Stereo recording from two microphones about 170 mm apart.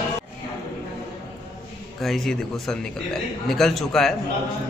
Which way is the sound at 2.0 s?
Centre (ahead or behind).